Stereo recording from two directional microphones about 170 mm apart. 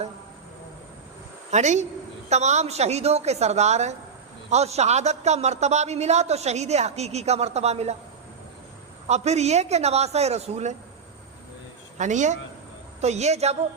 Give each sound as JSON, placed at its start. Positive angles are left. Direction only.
{"t": 1.5, "sound": "a woman's voice", "side_deg": -45}
{"t": 9.0, "sound": "a man's voice", "side_deg": -40}
{"t": 11.9, "sound": "a man's voice", "side_deg": -45}